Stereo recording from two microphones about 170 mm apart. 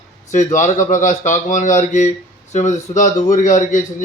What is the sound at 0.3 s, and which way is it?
Speech, 45° left (ahead or behind).